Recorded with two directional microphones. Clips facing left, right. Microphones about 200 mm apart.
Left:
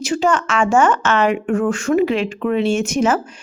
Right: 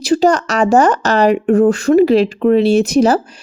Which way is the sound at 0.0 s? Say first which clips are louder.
Right 6 dB; 35° right (ahead or behind).